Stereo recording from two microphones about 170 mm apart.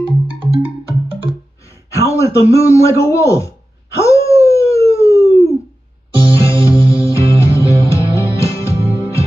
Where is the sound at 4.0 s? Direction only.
15° left (ahead or behind).